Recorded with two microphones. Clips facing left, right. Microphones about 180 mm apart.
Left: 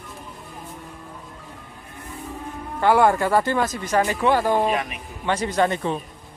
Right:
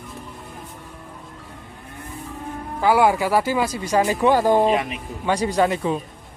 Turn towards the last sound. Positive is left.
turn(degrees=-5)  # may be behind; listen again after turning